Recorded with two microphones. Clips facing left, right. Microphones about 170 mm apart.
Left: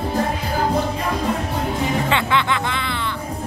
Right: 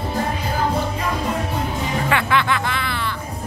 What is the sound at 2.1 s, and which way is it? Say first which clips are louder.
Music: even; 20° left (ahead or behind).